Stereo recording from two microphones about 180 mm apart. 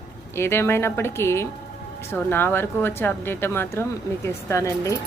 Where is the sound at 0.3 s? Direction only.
15° left (ahead or behind).